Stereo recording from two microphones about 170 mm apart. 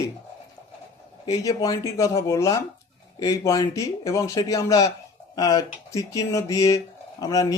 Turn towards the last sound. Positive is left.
turn(degrees=20)  # may be behind; listen again after turning